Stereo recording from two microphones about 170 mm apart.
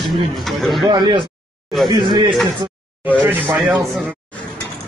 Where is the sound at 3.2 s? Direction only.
10° right (ahead or behind).